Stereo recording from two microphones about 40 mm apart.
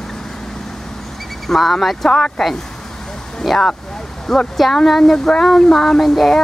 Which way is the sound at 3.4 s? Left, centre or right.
Centre.